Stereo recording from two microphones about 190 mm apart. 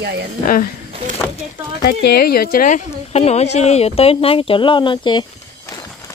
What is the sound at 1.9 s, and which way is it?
Speech, 60° left (ahead or behind).